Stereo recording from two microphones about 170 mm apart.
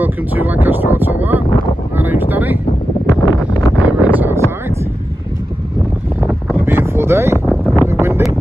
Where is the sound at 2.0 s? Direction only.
10° right (ahead or behind).